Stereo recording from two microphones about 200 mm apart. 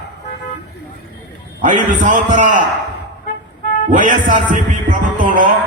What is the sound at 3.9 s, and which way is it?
Speech, 40° right (ahead or behind).